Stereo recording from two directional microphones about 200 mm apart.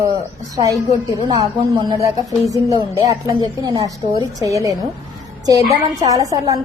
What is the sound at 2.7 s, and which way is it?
A woman's voice, 20° right (ahead or behind).